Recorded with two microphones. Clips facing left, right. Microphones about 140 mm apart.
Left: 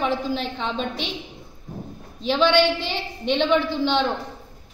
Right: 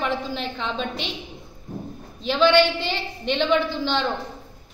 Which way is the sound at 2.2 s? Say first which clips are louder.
Right 1 dB; centre (ahead or behind).